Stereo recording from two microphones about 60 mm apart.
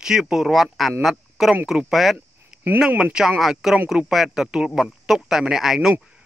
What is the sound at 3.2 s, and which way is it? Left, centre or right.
Speech, centre.